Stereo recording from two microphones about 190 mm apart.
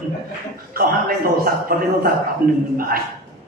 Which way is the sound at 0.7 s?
50° right (ahead or behind).